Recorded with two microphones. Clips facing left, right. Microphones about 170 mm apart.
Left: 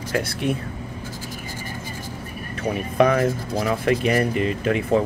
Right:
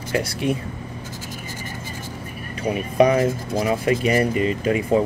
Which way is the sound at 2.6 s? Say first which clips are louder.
Right 2 dB; 10° right (ahead or behind).